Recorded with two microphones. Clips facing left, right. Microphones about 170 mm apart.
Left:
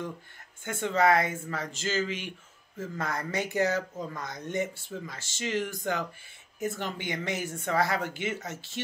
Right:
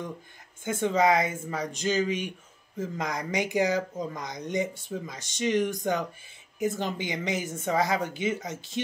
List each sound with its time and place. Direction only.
0.7 s a woman's voice: 15° right (ahead or behind)